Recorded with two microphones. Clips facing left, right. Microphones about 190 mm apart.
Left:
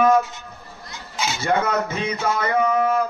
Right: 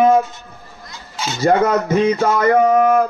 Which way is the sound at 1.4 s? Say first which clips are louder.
Right 7 dB; 45° right (ahead or behind).